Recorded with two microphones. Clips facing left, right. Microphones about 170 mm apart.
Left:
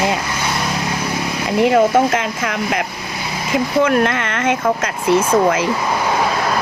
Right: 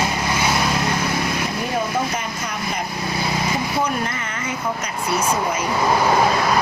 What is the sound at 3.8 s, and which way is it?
Speech, 85° left.